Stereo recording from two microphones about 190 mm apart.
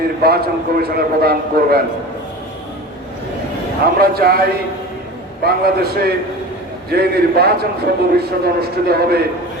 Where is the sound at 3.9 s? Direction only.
55° right (ahead or behind).